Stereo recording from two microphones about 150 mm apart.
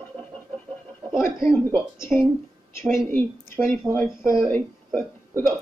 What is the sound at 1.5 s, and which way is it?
Speech, 20° left (ahead or behind).